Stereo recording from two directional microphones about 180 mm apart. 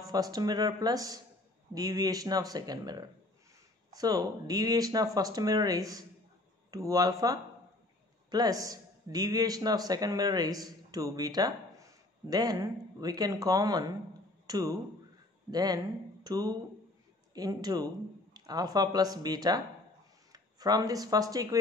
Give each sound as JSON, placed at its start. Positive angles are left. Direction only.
{"t": 0.0, "sound": "a man's voice", "side_deg": -20}